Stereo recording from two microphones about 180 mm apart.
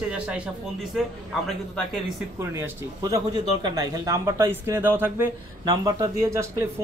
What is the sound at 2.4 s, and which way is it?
Speech, 15° right (ahead or behind).